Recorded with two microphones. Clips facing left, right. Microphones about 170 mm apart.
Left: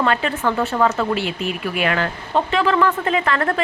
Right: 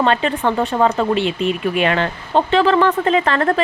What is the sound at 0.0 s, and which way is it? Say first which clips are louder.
Speech: right 3 dB; 25° right (ahead or behind).